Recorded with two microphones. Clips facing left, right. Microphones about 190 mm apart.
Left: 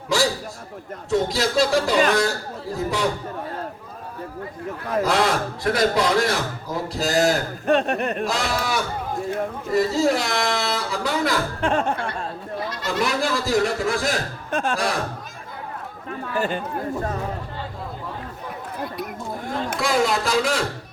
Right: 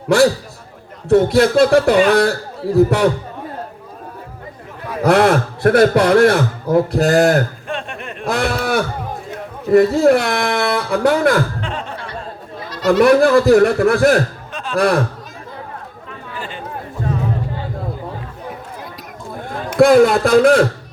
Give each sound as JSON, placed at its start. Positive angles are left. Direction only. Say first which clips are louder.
{"t": 0.1, "sound": "a man's voice", "louder": "right 9 dB", "side_deg": -60}
{"t": 5.0, "sound": "a man's voice", "louder": "right 11 dB", "side_deg": -60}
{"t": 7.7, "sound": "speech", "louder": "left 7 dB", "side_deg": 40}
{"t": 8.2, "sound": "a man's voice", "louder": "right 5 dB", "side_deg": -60}
{"t": 11.6, "sound": "music", "louder": "left 5 dB", "side_deg": 45}
{"t": 12.9, "sound": "a man's voice", "louder": "right 14 dB", "side_deg": -60}
{"t": 14.5, "sound": "speech", "louder": "left 8 dB", "side_deg": 50}
{"t": 14.8, "sound": "a man's voice", "louder": "right 10 dB", "side_deg": -60}
{"t": 16.0, "sound": "chatter", "louder": "left 7 dB", "side_deg": 45}
{"t": 19.7, "sound": "a man's voice", "louder": "right 13 dB", "side_deg": -55}